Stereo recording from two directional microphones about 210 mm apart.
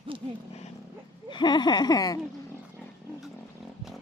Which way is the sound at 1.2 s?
20° left (ahead or behind).